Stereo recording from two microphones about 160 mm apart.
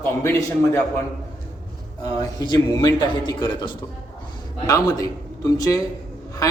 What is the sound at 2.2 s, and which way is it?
A man's voice, 25° left (ahead or behind).